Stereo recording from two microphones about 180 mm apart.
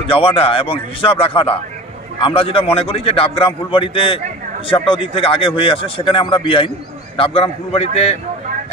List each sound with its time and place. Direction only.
0.0 s a man's voice: 30° left (ahead or behind)